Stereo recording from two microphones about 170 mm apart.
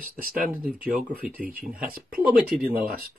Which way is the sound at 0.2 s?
55° right (ahead or behind).